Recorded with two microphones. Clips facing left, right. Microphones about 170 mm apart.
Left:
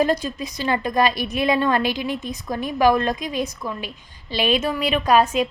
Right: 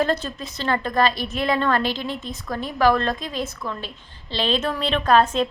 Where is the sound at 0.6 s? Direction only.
15° left (ahead or behind).